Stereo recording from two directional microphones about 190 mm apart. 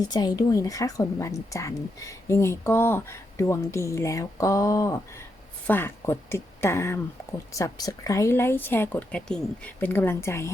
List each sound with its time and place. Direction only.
0.0 s a woman's voice: 20° left (ahead or behind)